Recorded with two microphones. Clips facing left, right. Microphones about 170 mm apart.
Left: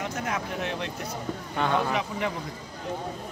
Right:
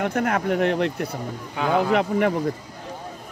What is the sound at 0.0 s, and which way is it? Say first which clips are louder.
Speech: right 8 dB; 60° right (ahead or behind).